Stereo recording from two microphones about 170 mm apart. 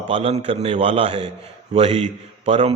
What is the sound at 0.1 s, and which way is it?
A man's voice, 35° right (ahead or behind).